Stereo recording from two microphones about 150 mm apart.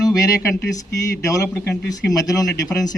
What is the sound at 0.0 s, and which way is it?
Speech, 20° left (ahead or behind).